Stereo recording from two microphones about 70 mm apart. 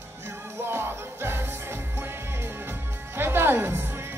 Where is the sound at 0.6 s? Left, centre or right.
Right.